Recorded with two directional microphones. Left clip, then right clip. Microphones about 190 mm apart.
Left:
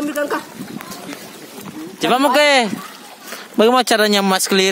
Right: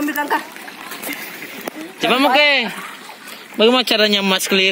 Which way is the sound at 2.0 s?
15° left (ahead or behind).